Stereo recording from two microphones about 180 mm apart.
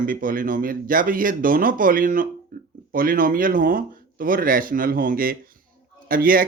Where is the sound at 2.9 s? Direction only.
50° right (ahead or behind).